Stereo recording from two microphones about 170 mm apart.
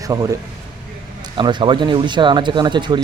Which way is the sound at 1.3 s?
25° right (ahead or behind).